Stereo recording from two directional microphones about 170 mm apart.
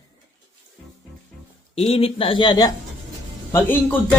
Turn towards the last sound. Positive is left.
turn(degrees=10)  # may be behind; listen again after turning